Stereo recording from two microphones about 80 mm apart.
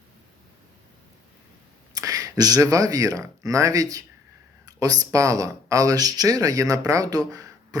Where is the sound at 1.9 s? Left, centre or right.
Right.